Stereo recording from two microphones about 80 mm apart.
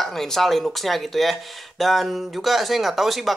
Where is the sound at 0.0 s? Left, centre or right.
Centre.